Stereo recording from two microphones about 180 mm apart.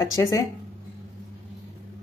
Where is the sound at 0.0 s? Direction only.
20° left (ahead or behind).